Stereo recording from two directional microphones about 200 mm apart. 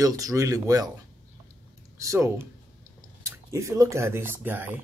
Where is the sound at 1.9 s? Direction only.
15° right (ahead or behind).